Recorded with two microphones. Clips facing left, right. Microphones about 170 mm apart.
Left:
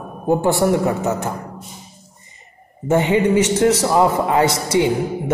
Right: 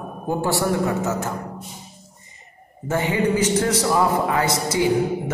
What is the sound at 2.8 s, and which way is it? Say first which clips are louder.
A man's voice: left 5 dB; 25° left (ahead or behind).